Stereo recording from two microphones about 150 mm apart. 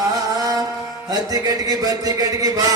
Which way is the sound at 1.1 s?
25° right (ahead or behind).